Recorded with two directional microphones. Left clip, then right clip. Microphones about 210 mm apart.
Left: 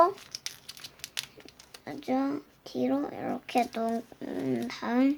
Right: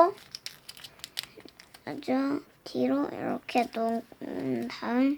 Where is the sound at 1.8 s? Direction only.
20° right (ahead or behind).